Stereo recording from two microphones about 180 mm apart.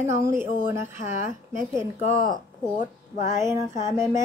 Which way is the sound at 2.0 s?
50° left (ahead or behind).